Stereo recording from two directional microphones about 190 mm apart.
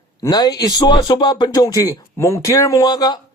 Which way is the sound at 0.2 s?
20° left (ahead or behind).